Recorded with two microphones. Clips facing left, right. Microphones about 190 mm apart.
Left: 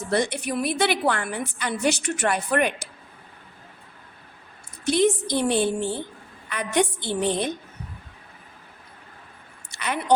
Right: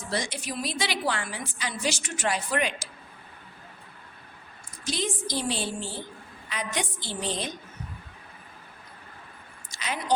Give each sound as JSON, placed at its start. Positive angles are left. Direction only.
{"t": 0.1, "sound": "a woman's voice", "side_deg": 60}
{"t": 4.9, "sound": "a woman's voice", "side_deg": 60}
{"t": 9.7, "sound": "speech", "side_deg": 60}